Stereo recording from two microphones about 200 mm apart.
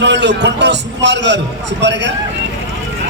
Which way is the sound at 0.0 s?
60° right (ahead or behind).